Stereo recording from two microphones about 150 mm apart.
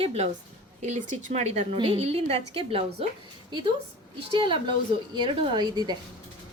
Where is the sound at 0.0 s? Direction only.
45° right (ahead or behind).